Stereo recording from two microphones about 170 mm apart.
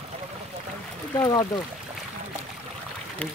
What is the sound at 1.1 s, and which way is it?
Speech, 20° left (ahead or behind).